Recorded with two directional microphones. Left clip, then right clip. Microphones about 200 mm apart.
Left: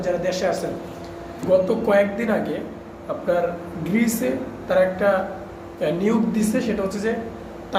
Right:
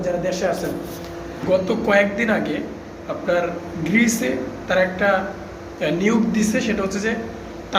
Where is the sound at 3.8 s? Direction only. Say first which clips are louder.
Right 3 dB; 10° left (ahead or behind).